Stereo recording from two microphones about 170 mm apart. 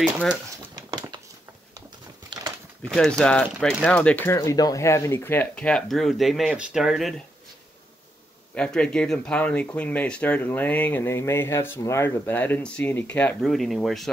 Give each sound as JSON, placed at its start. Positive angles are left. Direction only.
{"t": 0.0, "sound": "speech", "side_deg": 0}
{"t": 0.7, "sound": "crumpling", "side_deg": -20}
{"t": 2.8, "sound": "speech", "side_deg": 5}
{"t": 3.5, "sound": "speech", "side_deg": -5}
{"t": 3.8, "sound": "speech", "side_deg": 10}
{"t": 8.5, "sound": "speech", "side_deg": 5}